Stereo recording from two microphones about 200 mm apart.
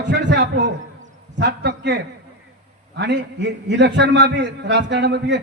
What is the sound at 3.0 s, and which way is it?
A man's voice, 60° right (ahead or behind).